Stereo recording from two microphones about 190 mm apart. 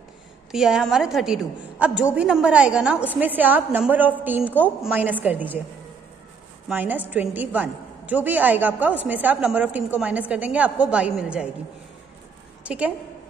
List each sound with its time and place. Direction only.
0.5 s a woman's voice: 5° right (ahead or behind)
6.7 s a woman's voice: 10° right (ahead or behind)
12.6 s a woman's voice: 5° right (ahead or behind)